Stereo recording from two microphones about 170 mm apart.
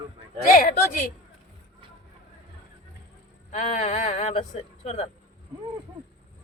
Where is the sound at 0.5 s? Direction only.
55° left (ahead or behind).